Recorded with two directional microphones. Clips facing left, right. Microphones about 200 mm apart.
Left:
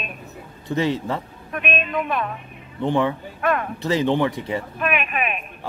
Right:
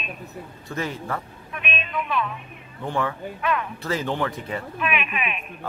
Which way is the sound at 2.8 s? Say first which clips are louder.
Left 6 dB; 20° left (ahead or behind).